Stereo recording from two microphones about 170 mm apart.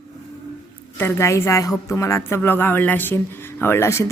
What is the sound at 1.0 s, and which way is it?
Speech, 15° left (ahead or behind).